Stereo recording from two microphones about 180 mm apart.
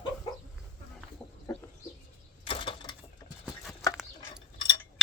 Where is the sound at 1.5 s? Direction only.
15° left (ahead or behind).